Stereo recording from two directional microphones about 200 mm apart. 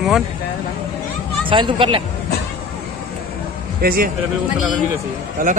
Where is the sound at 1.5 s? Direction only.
25° right (ahead or behind).